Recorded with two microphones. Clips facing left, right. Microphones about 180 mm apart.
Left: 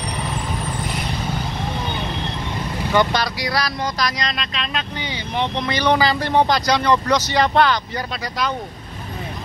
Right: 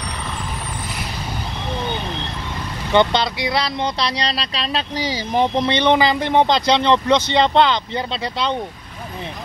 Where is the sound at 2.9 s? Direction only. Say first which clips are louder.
Right 3 dB; 25° right (ahead or behind); by 5.7 s 40° right (ahead or behind).